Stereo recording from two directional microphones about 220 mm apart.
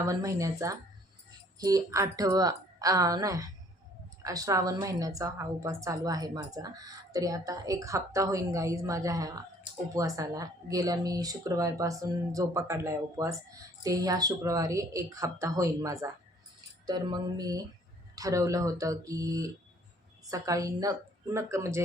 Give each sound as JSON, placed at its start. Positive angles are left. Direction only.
{"t": 0.1, "sound": "a woman's voice", "side_deg": -15}